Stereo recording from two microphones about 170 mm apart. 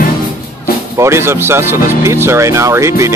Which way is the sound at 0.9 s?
15° right (ahead or behind).